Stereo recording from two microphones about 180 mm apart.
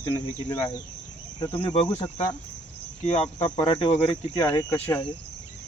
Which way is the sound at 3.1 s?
40° left (ahead or behind).